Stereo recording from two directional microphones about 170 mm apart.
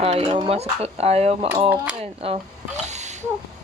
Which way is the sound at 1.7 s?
10° right (ahead or behind).